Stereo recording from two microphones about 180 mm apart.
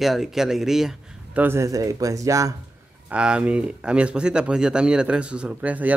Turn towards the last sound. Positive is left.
turn(degrees=-10)  # may be behind; listen again after turning